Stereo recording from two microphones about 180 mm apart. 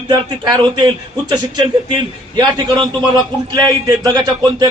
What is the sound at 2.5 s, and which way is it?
A man's voice, 25° right (ahead or behind).